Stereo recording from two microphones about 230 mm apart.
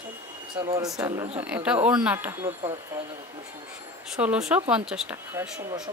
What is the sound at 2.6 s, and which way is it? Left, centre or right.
Speech, right.